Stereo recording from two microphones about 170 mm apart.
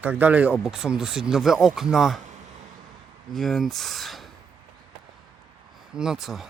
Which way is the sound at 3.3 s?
Centre (ahead or behind).